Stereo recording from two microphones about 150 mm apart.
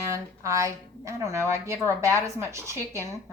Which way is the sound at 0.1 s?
20° right (ahead or behind).